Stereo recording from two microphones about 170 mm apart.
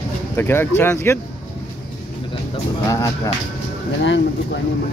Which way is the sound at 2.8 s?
20° left (ahead or behind).